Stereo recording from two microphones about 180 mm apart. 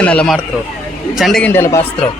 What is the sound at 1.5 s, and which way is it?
Speech, 15° left (ahead or behind).